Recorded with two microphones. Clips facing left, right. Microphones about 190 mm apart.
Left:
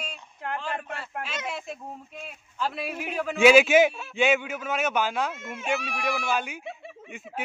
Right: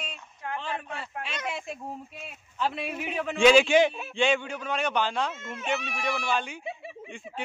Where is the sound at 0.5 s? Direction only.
Centre (ahead or behind).